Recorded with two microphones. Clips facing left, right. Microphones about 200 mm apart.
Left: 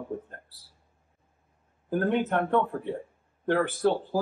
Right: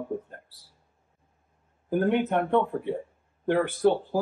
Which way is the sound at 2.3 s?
20° right (ahead or behind).